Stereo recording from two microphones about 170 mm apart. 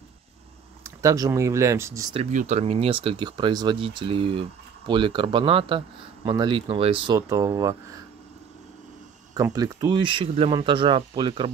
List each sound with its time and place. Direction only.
0.8 s speech: 20° right (ahead or behind)
2.1 s speech: 40° right (ahead or behind)
7.2 s speech: 20° right (ahead or behind)
9.3 s speech: 20° right (ahead or behind)